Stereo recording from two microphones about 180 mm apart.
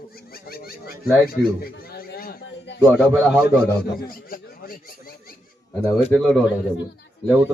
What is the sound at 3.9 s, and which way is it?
Speech, 55° left (ahead or behind).